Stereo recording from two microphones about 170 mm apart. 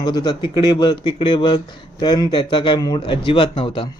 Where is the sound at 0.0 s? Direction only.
25° left (ahead or behind).